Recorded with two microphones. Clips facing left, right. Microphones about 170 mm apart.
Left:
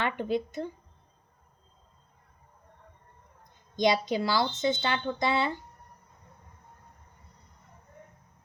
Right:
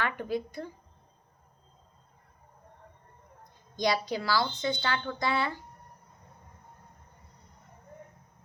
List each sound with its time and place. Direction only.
0.0 s speech: 20° left (ahead or behind)
3.8 s speech: 20° left (ahead or behind)